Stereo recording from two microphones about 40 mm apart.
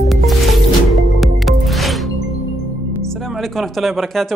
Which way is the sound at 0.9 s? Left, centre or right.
Centre.